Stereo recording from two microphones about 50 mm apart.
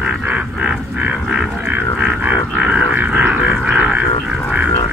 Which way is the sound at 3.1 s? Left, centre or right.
Right.